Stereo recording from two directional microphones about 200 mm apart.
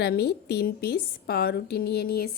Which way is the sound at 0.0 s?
55° left (ahead or behind).